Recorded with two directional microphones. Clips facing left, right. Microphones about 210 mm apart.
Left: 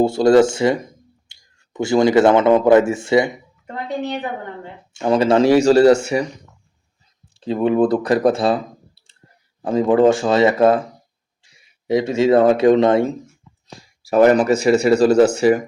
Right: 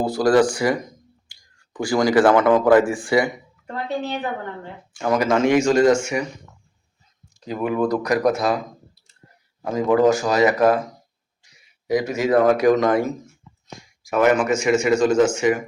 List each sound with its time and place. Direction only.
0.0 s a woman's voice: 25° left (ahead or behind)
5.0 s speech: 30° left (ahead or behind)
7.3 s speech: 30° left (ahead or behind)
11.4 s a sound: 30° left (ahead or behind)
11.9 s speech: 25° left (ahead or behind)